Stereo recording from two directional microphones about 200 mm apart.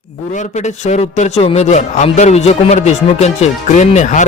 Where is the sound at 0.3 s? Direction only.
35° left (ahead or behind).